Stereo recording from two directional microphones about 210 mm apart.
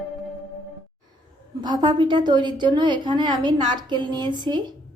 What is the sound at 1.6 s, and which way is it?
A woman's voice, 20° right (ahead or behind).